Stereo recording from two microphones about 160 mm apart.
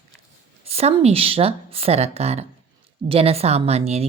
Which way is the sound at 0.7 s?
40° right (ahead or behind).